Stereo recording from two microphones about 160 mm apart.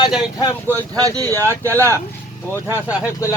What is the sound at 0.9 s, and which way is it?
Speech, 20° right (ahead or behind).